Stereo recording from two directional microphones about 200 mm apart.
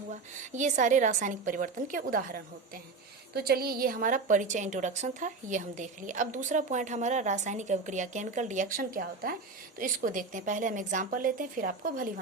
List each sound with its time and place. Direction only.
0.1 s a woman's voice: 40° right (ahead or behind)